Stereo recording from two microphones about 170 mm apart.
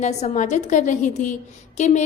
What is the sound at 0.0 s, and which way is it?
A woman's voice, 45° left (ahead or behind).